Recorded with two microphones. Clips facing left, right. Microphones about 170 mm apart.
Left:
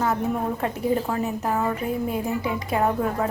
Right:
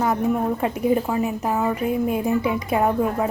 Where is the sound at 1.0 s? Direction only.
10° right (ahead or behind).